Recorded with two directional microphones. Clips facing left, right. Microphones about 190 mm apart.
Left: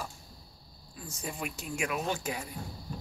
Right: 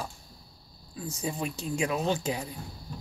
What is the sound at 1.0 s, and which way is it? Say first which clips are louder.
Speech: right 5 dB; 25° right (ahead or behind).